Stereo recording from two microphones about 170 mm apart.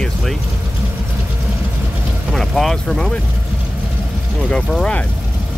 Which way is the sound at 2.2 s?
Centre (ahead or behind).